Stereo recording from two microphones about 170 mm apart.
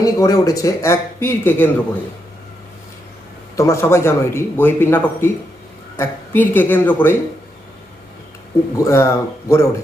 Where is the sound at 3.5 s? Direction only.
15° left (ahead or behind).